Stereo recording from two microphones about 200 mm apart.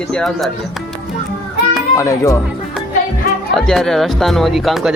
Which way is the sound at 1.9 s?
15° left (ahead or behind).